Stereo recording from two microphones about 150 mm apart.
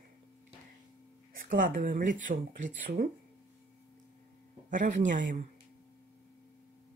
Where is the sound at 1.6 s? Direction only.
65° right (ahead or behind).